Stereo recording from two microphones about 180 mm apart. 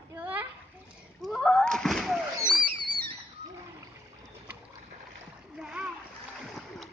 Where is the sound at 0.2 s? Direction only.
10° right (ahead or behind).